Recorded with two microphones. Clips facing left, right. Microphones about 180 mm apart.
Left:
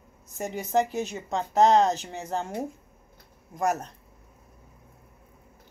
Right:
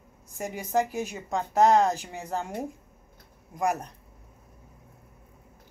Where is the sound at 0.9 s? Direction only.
10° right (ahead or behind).